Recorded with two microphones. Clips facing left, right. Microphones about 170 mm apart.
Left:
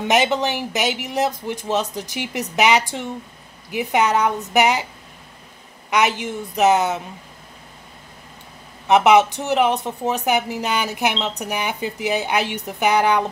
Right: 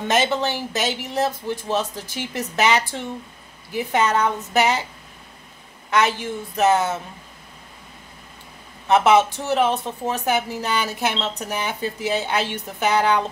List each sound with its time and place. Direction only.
0.1 s speech: 15° left (ahead or behind)
5.9 s speech: 15° left (ahead or behind)
8.8 s speech: 15° left (ahead or behind)